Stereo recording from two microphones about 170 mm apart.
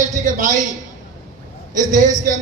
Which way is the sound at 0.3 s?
50° right (ahead or behind).